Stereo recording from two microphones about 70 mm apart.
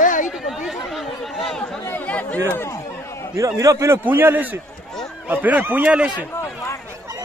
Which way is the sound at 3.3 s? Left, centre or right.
Right.